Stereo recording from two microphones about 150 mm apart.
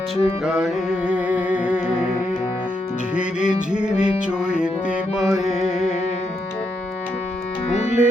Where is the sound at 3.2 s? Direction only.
5° right (ahead or behind).